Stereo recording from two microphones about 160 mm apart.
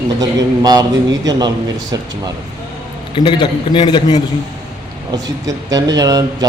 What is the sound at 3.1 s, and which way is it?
A man's voice, 30° left (ahead or behind).